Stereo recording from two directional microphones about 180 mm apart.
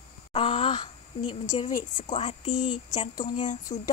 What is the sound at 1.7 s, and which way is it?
Speech, 50° left (ahead or behind).